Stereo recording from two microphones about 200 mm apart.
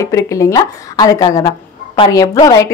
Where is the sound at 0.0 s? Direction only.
15° left (ahead or behind).